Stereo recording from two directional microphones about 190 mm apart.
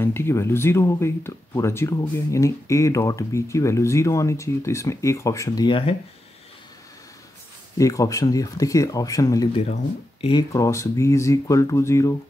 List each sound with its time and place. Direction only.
0.0 s speech: 10° left (ahead or behind)
7.7 s speech: 15° left (ahead or behind)